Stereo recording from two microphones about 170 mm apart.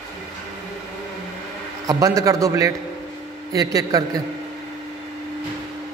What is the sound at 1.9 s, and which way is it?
A man's voice, 20° right (ahead or behind).